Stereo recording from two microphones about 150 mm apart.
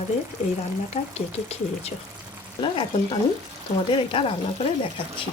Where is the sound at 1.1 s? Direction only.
45° left (ahead or behind).